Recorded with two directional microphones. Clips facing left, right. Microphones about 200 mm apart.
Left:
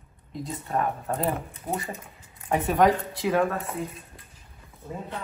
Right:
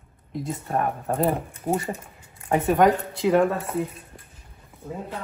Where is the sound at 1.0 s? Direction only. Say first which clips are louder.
Right 4 dB; 30° right (ahead or behind).